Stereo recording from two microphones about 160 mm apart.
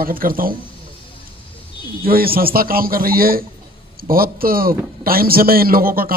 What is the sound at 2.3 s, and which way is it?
A man's voice, 65° right (ahead or behind).